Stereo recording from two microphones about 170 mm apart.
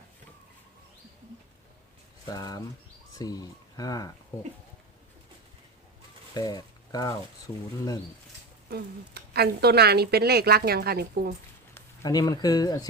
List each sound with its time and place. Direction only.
2.3 s speech: 20° left (ahead or behind)
6.3 s speech: 20° left (ahead or behind)
8.7 s speech: 70° right (ahead or behind)
11.7 s speech: 20° left (ahead or behind)